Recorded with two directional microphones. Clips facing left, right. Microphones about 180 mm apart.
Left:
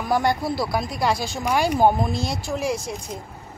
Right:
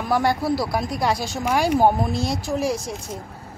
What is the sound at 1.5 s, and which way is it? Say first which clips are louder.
Speech: right 1 dB; 5° right (ahead or behind).